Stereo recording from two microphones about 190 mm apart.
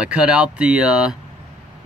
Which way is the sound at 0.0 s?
5° right (ahead or behind).